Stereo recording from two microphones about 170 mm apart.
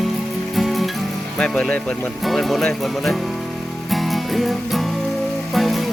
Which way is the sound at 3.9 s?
Centre (ahead or behind).